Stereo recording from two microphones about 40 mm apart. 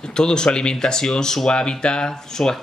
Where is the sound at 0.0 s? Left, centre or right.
Centre.